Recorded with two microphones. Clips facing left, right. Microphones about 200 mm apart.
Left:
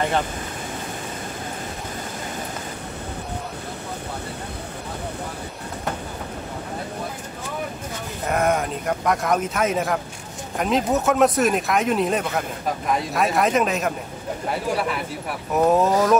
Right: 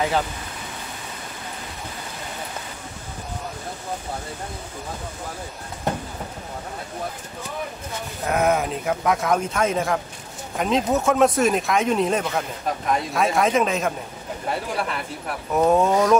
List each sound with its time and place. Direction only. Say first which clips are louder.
8.3 s speech: right 1 dB; centre (ahead or behind)